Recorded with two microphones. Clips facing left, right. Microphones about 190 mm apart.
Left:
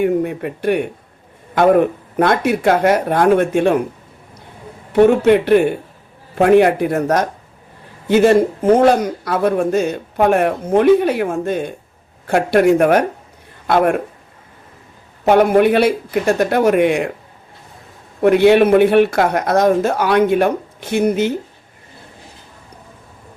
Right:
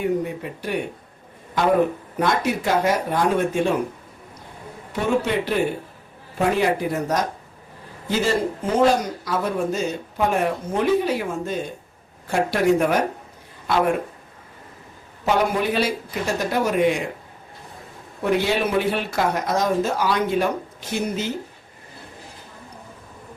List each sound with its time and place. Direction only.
0.0 s speech: 60° left (ahead or behind)
4.9 s a man's voice: 60° left (ahead or behind)
15.2 s speech: 55° left (ahead or behind)
18.2 s speech: 60° left (ahead or behind)